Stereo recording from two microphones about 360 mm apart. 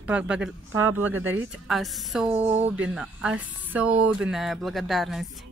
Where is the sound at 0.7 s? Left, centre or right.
Right.